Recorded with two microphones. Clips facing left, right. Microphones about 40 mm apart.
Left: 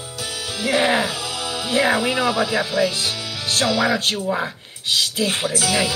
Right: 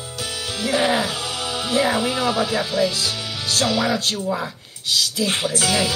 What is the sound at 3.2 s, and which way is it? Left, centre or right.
Music, centre.